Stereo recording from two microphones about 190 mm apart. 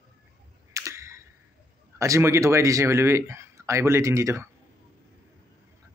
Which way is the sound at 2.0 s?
15° right (ahead or behind).